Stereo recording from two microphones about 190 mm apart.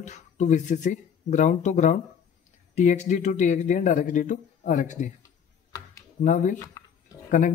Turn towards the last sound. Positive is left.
turn(degrees=45)  # may be behind; listen again after turning